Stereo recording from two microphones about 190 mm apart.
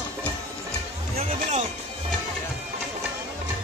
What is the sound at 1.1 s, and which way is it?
Music, 35° right (ahead or behind).